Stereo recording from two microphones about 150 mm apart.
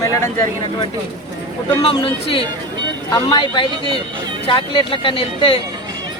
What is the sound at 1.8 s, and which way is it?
Speech, 35° left (ahead or behind).